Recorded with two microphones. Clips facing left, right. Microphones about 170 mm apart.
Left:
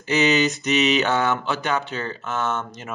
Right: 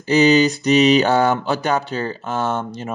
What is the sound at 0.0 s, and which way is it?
Mantra, 35° right (ahead or behind).